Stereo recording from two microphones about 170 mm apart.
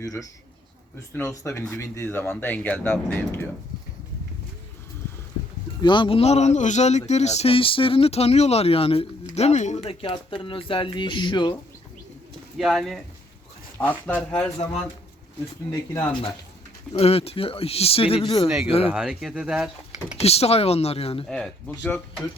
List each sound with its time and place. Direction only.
0.0 s speech: 20° left (ahead or behind)
5.8 s speech: 30° left (ahead or behind)
12.5 s speech: centre (ahead or behind)
15.7 s speech: 25° left (ahead or behind)
16.9 s speech: 35° left (ahead or behind)
18.4 s speech: 5° right (ahead or behind)
20.2 s speech: 35° left (ahead or behind)
21.2 s speech: 5° left (ahead or behind)